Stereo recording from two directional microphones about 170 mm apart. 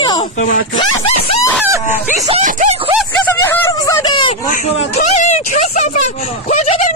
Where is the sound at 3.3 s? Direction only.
10° left (ahead or behind).